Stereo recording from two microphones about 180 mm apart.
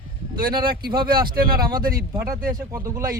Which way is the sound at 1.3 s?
55° right (ahead or behind).